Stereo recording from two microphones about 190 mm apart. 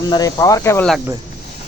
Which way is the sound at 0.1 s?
20° left (ahead or behind).